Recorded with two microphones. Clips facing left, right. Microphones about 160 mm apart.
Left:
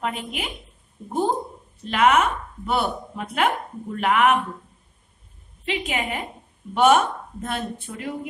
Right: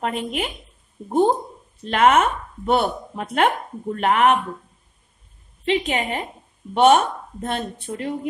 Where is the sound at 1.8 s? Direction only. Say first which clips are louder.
Right 2 dB; 40° right (ahead or behind).